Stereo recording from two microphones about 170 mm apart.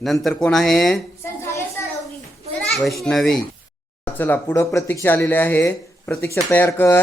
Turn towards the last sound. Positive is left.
turn(degrees=15)  # may be behind; listen again after turning